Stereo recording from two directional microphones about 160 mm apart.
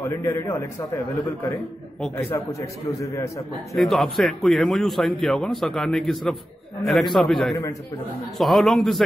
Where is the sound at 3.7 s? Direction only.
Centre (ahead or behind).